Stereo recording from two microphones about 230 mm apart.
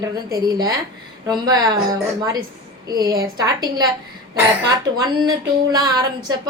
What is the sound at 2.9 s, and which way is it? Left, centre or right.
Speech, centre.